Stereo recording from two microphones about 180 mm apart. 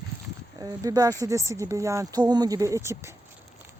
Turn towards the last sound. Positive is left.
turn(degrees=-15)  # may be behind; listen again after turning